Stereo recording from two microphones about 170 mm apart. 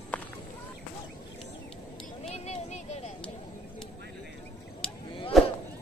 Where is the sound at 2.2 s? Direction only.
40° left (ahead or behind).